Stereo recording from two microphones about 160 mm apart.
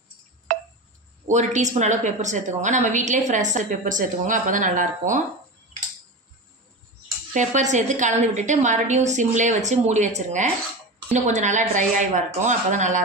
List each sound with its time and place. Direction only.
0.5 s a sound: 55° right (ahead or behind)
1.2 s a woman's voice: 45° right (ahead or behind)
7.3 s a woman's voice: 50° right (ahead or behind)